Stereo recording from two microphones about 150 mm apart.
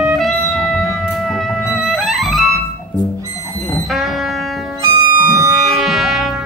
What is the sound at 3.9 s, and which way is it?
Music, centre (ahead or behind).